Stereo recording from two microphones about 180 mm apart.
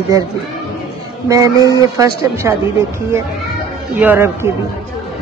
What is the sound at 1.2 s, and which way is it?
A woman's voice, 20° right (ahead or behind).